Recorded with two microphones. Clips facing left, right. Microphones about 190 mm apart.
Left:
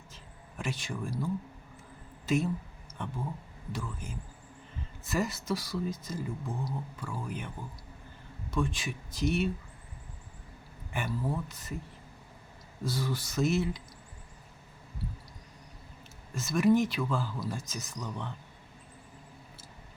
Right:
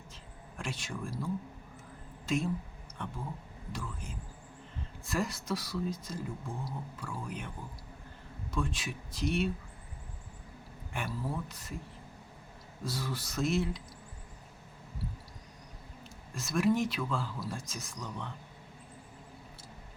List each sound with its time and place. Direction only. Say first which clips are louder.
0.1 s a sound: right 1 dB; 5° left (ahead or behind)
2.2 s speech: left 3 dB; 5° left (ahead or behind)
3.7 s speech: left 3 dB; 5° left (ahead or behind)
10.9 s speech: left 3 dB; centre (ahead or behind)
12.8 s speech: left 4 dB; centre (ahead or behind)
16.3 s speech: left 4 dB; centre (ahead or behind)